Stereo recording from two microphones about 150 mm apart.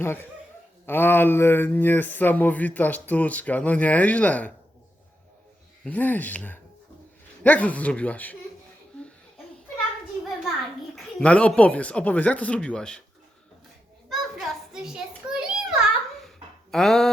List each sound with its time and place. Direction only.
0.0 s speech: 15° left (ahead or behind)
5.8 s speech: 10° left (ahead or behind)
10.9 s speech: 10° left (ahead or behind)
14.1 s children playing: centre (ahead or behind)
16.7 s speech: centre (ahead or behind)